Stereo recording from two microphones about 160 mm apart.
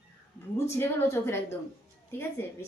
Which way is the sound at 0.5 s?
15° left (ahead or behind).